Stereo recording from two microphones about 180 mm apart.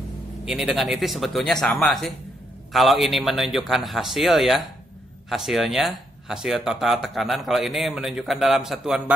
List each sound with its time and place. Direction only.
0.5 s speech: 5° right (ahead or behind)